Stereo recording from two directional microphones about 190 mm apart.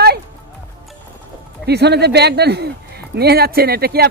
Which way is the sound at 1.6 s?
60° right (ahead or behind).